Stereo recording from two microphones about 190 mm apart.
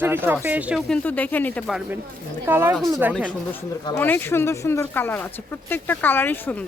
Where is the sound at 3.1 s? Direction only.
5° right (ahead or behind).